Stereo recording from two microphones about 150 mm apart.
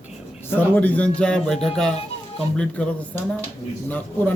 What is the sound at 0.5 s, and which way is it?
A man's voice, 10° left (ahead or behind).